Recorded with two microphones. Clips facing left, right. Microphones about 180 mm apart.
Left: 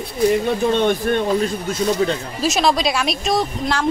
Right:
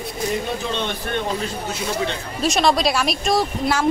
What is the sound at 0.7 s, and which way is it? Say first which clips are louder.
Speech: left 8 dB; 50° left (ahead or behind).